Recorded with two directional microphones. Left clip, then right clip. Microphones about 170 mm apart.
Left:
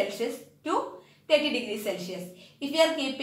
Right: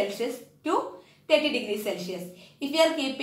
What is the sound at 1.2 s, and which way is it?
A woman's voice, centre (ahead or behind).